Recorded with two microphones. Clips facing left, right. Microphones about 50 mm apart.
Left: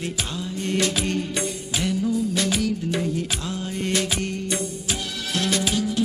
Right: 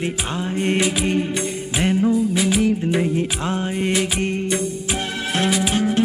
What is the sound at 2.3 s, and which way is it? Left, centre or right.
Music, centre.